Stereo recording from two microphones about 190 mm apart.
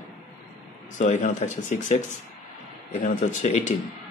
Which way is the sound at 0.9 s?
40° left (ahead or behind).